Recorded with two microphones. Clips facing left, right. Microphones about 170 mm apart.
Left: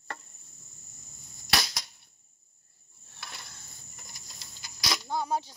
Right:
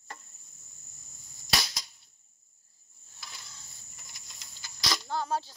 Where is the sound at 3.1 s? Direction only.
65° left (ahead or behind).